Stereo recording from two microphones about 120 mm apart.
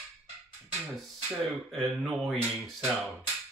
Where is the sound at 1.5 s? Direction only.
Centre (ahead or behind).